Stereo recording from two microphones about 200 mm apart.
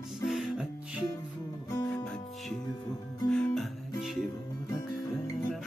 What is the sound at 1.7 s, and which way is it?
Music, 20° left (ahead or behind).